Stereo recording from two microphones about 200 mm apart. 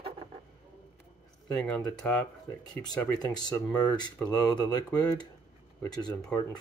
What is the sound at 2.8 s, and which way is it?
Speech, 20° left (ahead or behind).